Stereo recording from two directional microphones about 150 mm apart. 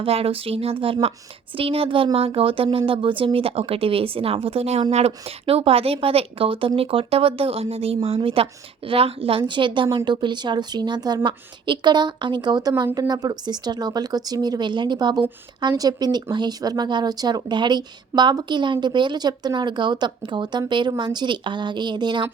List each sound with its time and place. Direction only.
0.0 s speech: 40° right (ahead or behind)